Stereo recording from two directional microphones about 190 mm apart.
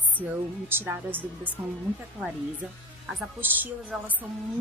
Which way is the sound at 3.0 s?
5° right (ahead or behind).